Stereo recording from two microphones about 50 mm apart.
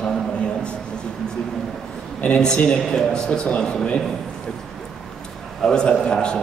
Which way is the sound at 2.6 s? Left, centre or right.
Centre.